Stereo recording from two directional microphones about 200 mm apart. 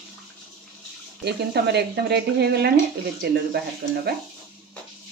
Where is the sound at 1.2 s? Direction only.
55° right (ahead or behind).